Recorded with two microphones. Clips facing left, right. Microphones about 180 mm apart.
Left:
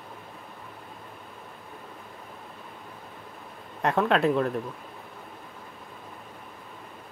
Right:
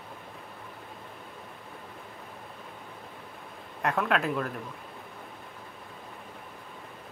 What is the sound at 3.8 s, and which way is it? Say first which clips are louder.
Speech: left 5 dB; 35° left (ahead or behind).